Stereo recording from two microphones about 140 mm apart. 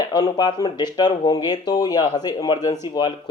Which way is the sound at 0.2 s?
30° left (ahead or behind).